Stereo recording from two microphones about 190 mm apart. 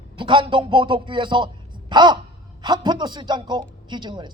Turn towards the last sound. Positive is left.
turn(degrees=-25)  # may be behind; listen again after turning